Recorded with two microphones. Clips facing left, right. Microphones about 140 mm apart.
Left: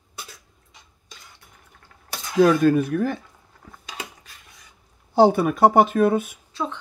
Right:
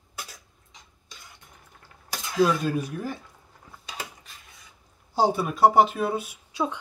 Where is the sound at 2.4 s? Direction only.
55° left (ahead or behind).